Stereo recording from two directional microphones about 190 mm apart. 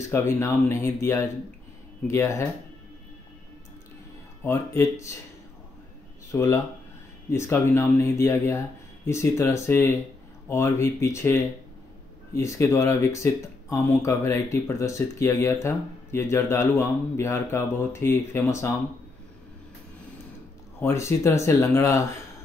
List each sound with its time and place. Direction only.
0.0 s speech: 15° left (ahead or behind)
4.4 s speech: 10° left (ahead or behind)
6.3 s speech: 15° left (ahead or behind)
20.8 s speech: 15° left (ahead or behind)